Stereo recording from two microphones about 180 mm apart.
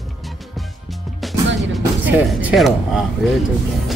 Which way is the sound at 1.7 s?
5° right (ahead or behind).